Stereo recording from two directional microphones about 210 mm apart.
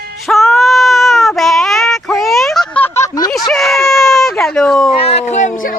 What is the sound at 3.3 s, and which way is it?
Speech, centre (ahead or behind).